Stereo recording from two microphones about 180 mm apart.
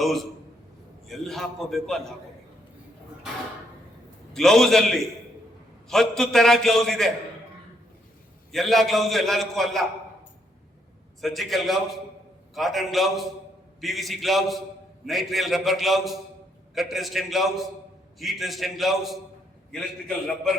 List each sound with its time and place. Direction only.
0.0 s a man's voice: centre (ahead or behind)
4.4 s a man's voice: centre (ahead or behind)
8.5 s a man's voice: centre (ahead or behind)
11.2 s a man's voice: centre (ahead or behind)